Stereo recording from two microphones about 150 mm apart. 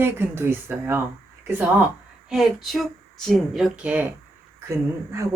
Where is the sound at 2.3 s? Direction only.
Centre (ahead or behind).